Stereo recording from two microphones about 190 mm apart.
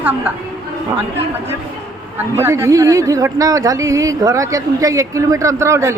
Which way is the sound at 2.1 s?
15° right (ahead or behind).